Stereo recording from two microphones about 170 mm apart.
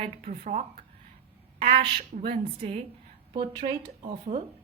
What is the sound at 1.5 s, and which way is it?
Speech, 35° right (ahead or behind).